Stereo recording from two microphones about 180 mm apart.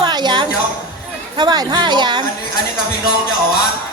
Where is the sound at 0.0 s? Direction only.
25° right (ahead or behind).